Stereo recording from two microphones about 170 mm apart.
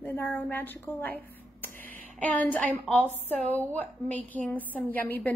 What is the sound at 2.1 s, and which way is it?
A woman's voice, 10° left (ahead or behind).